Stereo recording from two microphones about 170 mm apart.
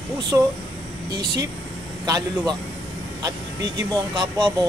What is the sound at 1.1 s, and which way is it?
Speech, 25° right (ahead or behind).